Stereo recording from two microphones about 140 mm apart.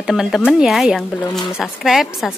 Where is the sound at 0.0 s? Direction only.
Centre (ahead or behind).